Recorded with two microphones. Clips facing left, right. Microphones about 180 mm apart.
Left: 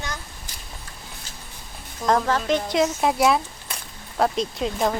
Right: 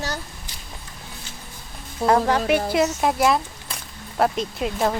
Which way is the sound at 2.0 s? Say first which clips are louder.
Right 3 dB; 35° right (ahead or behind).